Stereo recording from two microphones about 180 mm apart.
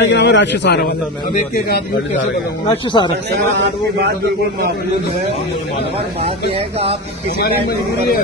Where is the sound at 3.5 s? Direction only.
80° right.